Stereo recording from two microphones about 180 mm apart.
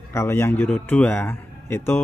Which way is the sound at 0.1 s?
15° left (ahead or behind).